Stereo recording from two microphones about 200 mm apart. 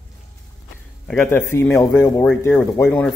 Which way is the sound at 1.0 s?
10° left (ahead or behind).